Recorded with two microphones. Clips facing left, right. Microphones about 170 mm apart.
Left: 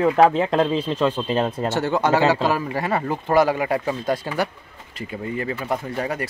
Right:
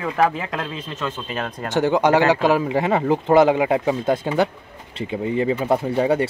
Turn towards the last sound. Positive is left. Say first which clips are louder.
# right 7 dB
turn(degrees=-25)  # may be behind; listen again after turning